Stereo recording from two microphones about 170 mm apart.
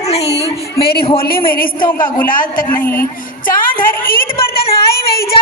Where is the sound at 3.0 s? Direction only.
55° left (ahead or behind).